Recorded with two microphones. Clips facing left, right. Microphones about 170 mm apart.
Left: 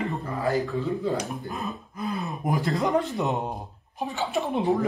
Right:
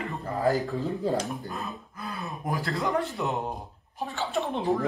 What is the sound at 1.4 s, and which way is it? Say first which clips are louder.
Speech: left 3 dB; 20° left (ahead or behind).